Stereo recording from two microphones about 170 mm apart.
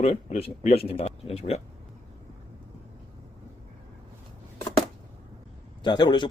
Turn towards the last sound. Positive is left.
turn(degrees=25)  # may be behind; listen again after turning